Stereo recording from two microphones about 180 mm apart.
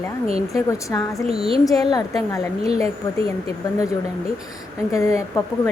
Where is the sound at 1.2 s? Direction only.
30° right (ahead or behind).